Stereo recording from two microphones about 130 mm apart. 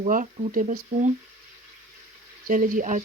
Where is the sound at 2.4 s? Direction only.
90° right.